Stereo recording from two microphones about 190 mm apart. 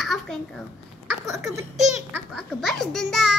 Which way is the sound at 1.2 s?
15° right (ahead or behind).